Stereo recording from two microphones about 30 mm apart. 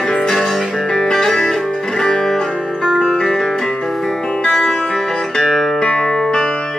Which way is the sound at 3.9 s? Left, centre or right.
Centre.